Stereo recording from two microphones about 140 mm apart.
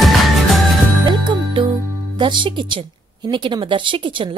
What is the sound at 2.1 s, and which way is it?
A woman's voice, 35° right (ahead or behind).